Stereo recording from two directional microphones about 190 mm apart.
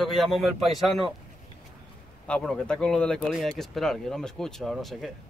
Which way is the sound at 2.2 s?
5° left (ahead or behind).